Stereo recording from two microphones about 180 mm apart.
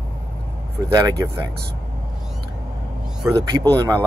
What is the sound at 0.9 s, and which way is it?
Speech, 20° right (ahead or behind).